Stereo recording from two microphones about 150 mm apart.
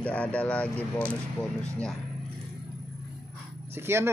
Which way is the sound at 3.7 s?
15° right (ahead or behind).